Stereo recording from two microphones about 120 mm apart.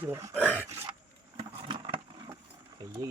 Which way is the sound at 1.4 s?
45° right (ahead or behind).